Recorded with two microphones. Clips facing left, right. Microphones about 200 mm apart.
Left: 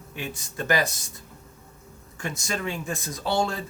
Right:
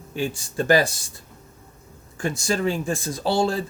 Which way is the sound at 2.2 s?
30° right (ahead or behind).